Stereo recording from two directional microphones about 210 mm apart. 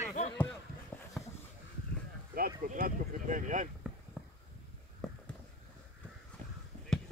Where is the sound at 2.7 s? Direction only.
40° right (ahead or behind).